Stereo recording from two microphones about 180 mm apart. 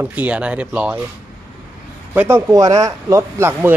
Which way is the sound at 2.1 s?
15° right (ahead or behind).